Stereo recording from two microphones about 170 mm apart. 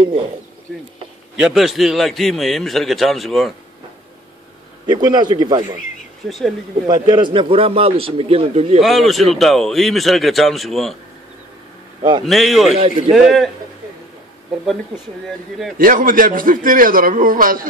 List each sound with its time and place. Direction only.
1.4 s a man's voice: centre (ahead or behind)
4.8 s a man's voice: 25° right (ahead or behind)
6.2 s a man's voice: centre (ahead or behind)
6.9 s a man's voice: 25° right (ahead or behind)
8.8 s a man's voice: centre (ahead or behind)
12.3 s a man's voice: centre (ahead or behind)
12.7 s a man's voice: 35° right (ahead or behind)
13.1 s a man's voice: centre (ahead or behind)
15.8 s a man's voice: 55° right (ahead or behind)